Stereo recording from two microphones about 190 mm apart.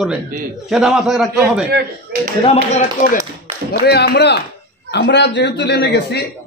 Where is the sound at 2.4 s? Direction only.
30° left (ahead or behind).